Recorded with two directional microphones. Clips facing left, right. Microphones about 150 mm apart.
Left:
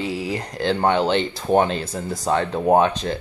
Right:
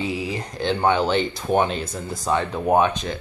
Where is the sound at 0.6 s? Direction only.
30° left (ahead or behind).